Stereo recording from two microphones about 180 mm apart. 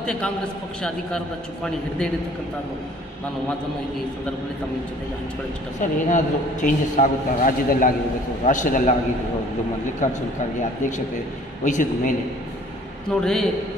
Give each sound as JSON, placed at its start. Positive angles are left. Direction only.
{"t": 0.0, "sound": "a man's voice", "side_deg": 5}
{"t": 5.8, "sound": "a man's voice", "side_deg": 45}
{"t": 10.0, "sound": "a man's voice", "side_deg": 40}
{"t": 11.6, "sound": "a man's voice", "side_deg": 45}
{"t": 13.2, "sound": "a man's voice", "side_deg": 5}